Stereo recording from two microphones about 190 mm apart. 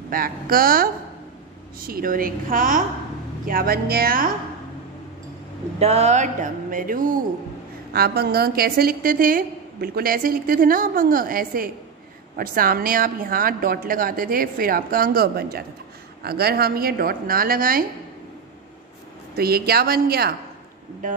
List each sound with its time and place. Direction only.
0.1 s a woman's voice: 50° right (ahead or behind)
5.8 s a woman's voice: 35° right (ahead or behind); by 17.8 s 50° right (ahead or behind)
19.3 s a woman's voice: 55° right (ahead or behind)